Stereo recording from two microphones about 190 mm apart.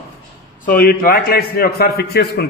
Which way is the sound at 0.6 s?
50° left (ahead or behind).